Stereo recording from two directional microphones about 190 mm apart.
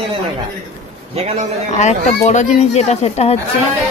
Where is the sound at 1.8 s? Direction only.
40° left (ahead or behind).